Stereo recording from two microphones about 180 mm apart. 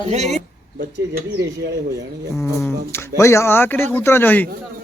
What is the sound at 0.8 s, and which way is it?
Speech, 65° right (ahead or behind).